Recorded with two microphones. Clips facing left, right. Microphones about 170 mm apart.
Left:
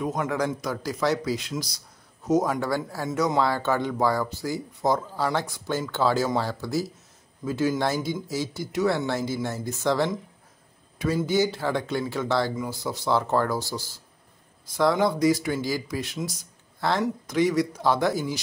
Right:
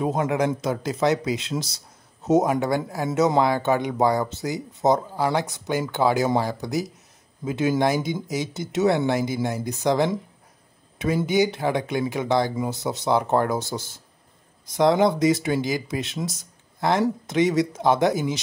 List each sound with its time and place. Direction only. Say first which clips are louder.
0.2 s speech: right 4 dB; 20° right (ahead or behind)
11.2 s speech: right 4 dB; 20° right (ahead or behind)